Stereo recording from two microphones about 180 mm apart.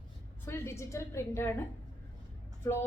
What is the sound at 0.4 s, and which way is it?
A woman's voice, 15° left (ahead or behind).